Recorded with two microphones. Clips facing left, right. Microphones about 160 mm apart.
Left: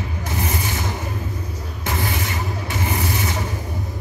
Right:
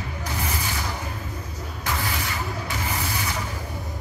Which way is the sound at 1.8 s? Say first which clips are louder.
Left 4 dB; 25° left (ahead or behind).